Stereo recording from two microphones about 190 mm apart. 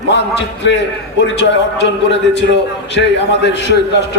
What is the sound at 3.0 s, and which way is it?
Speech, 65° left (ahead or behind).